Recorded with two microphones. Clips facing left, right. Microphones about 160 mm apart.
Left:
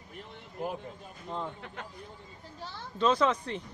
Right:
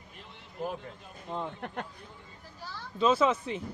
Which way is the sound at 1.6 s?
60° right (ahead or behind).